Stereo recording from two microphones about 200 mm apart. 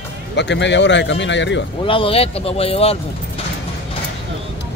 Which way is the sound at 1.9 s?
25° left (ahead or behind).